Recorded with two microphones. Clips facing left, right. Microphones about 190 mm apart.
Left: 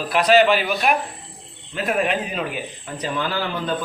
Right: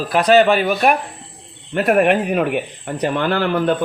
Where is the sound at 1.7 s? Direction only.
60° right (ahead or behind).